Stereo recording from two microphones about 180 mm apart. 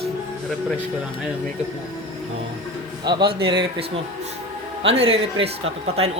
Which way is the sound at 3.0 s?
25° right (ahead or behind).